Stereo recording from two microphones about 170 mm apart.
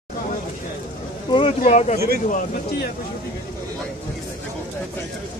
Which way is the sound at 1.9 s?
65° right (ahead or behind).